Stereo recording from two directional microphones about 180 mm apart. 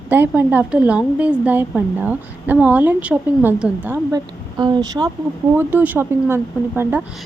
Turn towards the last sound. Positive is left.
turn(degrees=-10)  # may be behind; listen again after turning